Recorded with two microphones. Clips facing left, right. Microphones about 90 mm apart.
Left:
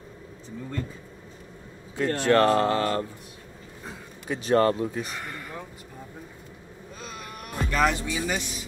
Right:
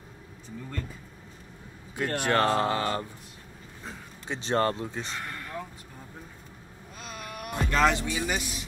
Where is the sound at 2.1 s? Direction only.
15° right (ahead or behind).